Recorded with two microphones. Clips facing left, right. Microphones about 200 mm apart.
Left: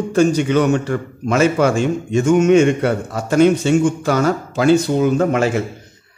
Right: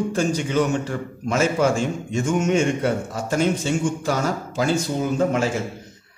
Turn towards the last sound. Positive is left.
turn(degrees=70)  # may be behind; listen again after turning